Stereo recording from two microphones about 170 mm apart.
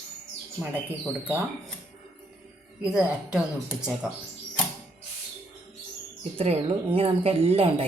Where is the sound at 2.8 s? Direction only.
5° right (ahead or behind).